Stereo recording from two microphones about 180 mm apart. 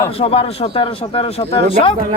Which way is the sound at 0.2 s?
30° left (ahead or behind).